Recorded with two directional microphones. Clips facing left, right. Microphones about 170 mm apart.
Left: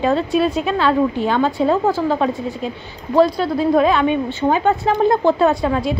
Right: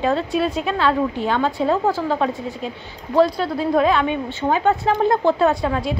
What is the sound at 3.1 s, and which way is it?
A woman's voice, 5° left (ahead or behind).